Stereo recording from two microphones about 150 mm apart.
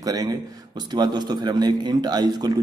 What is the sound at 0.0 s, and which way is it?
A man's voice, 25° right (ahead or behind).